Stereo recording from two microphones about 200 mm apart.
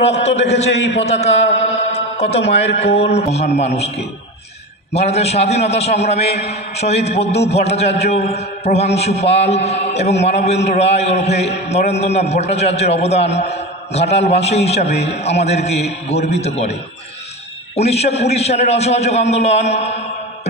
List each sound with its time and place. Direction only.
0.0 s a man's voice: 30° left (ahead or behind)
1.6 s music: 30° left (ahead or behind)
2.8 s a man's voice: 30° left (ahead or behind)
17.7 s a man's voice: 30° left (ahead or behind)